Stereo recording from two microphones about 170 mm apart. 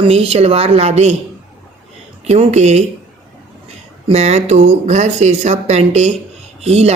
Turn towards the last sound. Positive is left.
turn(degrees=-40)  # may be behind; listen again after turning